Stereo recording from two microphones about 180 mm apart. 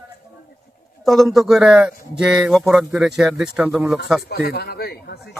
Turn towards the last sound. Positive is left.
turn(degrees=65)  # may be behind; listen again after turning